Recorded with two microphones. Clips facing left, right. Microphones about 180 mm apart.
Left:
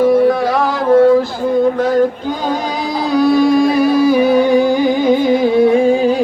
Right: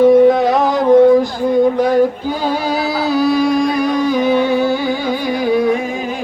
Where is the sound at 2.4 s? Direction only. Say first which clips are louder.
Right 2 dB; 10° right (ahead or behind).